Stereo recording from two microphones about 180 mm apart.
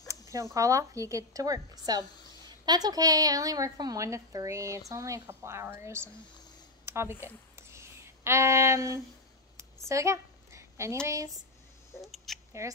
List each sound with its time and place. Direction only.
0.1 s a sound: 20° right (ahead or behind)
0.6 s a woman's voice: 20° right (ahead or behind)
7.5 s a sound: 15° right (ahead or behind)
9.8 s a woman's voice: 15° right (ahead or behind)
12.0 s speech: centre (ahead or behind)
12.6 s a woman's voice: 15° right (ahead or behind)